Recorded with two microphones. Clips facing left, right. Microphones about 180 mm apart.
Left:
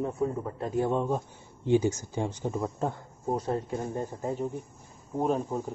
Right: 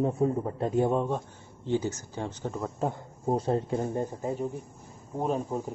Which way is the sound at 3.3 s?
25° right (ahead or behind).